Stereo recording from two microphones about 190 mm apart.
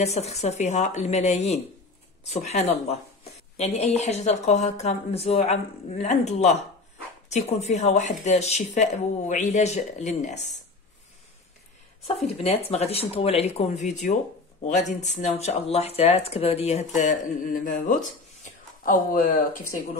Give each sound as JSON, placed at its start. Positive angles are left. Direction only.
{"t": 0.0, "sound": "a woman's voice", "side_deg": 35}
{"t": 12.2, "sound": "a woman's voice", "side_deg": 35}